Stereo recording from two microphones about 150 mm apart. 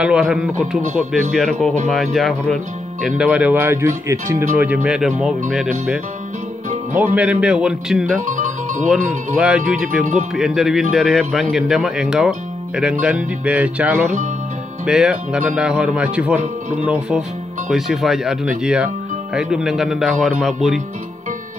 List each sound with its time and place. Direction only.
0.0 s speech: 5° right (ahead or behind)
4.6 s speech: 5° right (ahead or behind)
7.2 s speech: 10° right (ahead or behind)
8.3 s music: 55° right (ahead or behind)
9.4 s speech: 5° right (ahead or behind)